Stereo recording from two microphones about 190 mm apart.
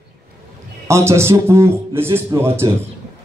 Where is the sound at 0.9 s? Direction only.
15° right (ahead or behind).